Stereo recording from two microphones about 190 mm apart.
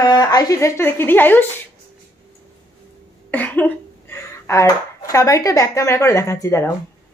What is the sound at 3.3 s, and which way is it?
Speech, 10° left (ahead or behind).